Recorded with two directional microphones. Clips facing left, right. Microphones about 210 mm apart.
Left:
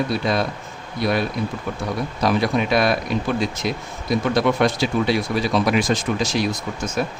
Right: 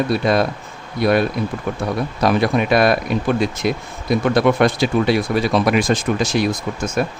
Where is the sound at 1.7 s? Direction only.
55° right (ahead or behind).